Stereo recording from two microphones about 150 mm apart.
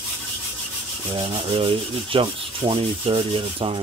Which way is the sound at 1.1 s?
35° right (ahead or behind).